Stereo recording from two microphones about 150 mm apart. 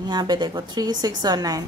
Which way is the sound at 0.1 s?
30° right (ahead or behind).